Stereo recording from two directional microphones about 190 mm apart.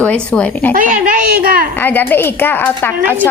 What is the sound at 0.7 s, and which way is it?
Speech, 45° right (ahead or behind).